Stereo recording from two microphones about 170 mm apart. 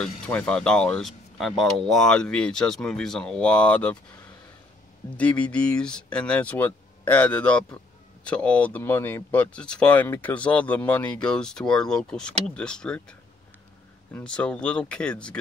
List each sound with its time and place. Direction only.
0.0 s speech: 5° left (ahead or behind)
5.1 s speech: 5° left (ahead or behind)
14.1 s speech: 5° left (ahead or behind)